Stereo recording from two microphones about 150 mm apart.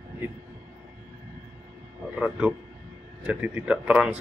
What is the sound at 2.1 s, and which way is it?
Speech, 10° right (ahead or behind).